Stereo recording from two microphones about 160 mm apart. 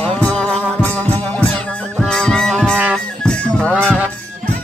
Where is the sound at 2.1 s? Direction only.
5° left (ahead or behind).